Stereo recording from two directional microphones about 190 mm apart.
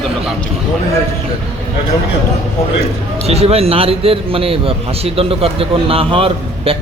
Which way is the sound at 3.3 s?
30° right (ahead or behind).